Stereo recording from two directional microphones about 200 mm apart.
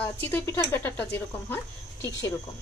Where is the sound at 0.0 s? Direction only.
10° left (ahead or behind).